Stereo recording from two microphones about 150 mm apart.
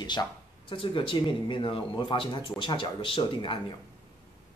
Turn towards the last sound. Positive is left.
turn(degrees=35)  # may be behind; listen again after turning